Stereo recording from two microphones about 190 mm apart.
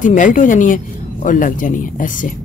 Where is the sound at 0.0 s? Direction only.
45° left (ahead or behind).